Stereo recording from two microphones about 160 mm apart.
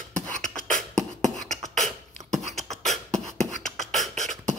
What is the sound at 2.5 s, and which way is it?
Beatboxing, centre (ahead or behind).